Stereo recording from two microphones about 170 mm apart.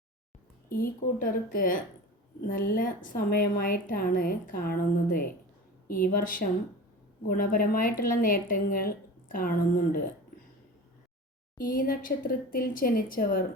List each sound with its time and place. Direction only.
0.7 s a woman's voice: 55° left (ahead or behind)
11.5 s a woman's voice: 55° left (ahead or behind)